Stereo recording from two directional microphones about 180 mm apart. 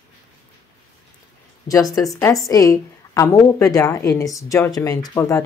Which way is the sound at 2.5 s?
20° left (ahead or behind).